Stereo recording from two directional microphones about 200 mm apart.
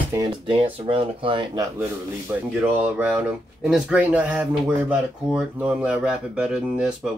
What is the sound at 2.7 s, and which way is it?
Speech, 5° right (ahead or behind).